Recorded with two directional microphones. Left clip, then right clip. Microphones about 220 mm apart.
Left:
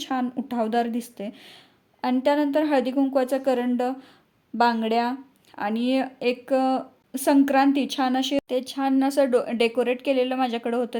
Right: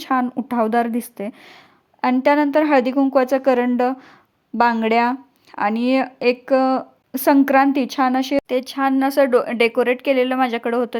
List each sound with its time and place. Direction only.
0.0 s speech: 20° right (ahead or behind)